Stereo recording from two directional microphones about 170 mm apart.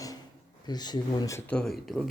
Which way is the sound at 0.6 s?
25° left (ahead or behind).